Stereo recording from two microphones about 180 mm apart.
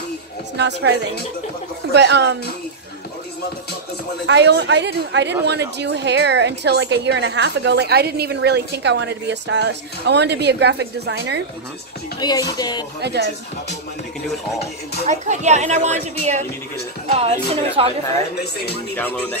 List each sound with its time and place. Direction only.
0.6 s a woman's voice: 70° right (ahead or behind)
4.3 s a woman's voice: 70° right (ahead or behind)
12.2 s speech: 20° left (ahead or behind)
13.0 s a woman's voice: 70° right (ahead or behind)
15.0 s a woman's voice: 40° right (ahead or behind)
17.8 s a woman's voice: 30° right (ahead or behind)
18.9 s speech: 10° left (ahead or behind)